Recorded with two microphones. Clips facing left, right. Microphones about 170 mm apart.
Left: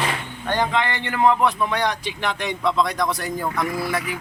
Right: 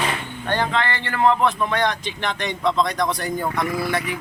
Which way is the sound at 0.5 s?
15° left (ahead or behind).